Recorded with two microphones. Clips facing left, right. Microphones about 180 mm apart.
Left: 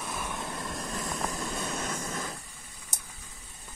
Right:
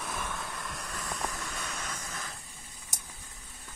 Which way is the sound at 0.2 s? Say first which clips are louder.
Left 3 dB; 20° left (ahead or behind).